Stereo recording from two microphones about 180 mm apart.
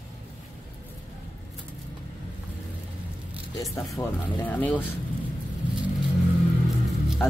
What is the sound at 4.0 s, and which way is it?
Speech, 25° left (ahead or behind).